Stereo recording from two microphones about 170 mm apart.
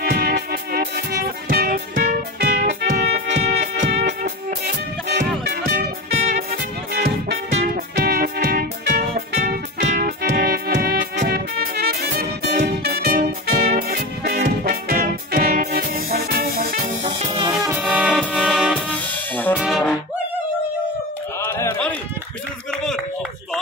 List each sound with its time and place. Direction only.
0.0 s music: 60° right (ahead or behind)
17.0 s music: 30° right (ahead or behind)
17.8 s music: 5° right (ahead or behind)
18.1 s music: 5° left (ahead or behind)
18.9 s drum kit: 10° left (ahead or behind)
19.6 s brass instrument: centre (ahead or behind)
21.4 s music: 15° left (ahead or behind)